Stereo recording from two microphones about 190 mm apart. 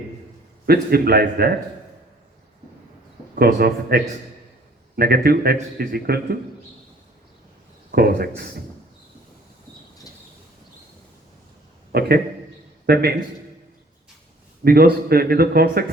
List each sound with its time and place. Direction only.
0.6 s a man's voice: 55° right (ahead or behind)
3.3 s a man's voice: 55° right (ahead or behind)
7.9 s speech: 55° right (ahead or behind)
11.9 s a man's voice: 55° right (ahead or behind)
14.6 s a man's voice: 55° right (ahead or behind)